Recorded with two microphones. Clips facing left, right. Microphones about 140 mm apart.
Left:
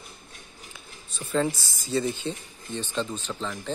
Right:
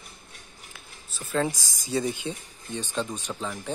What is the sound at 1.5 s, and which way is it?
Speech, 15° right (ahead or behind).